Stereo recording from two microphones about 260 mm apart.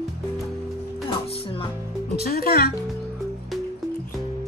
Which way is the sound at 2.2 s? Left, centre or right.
Left.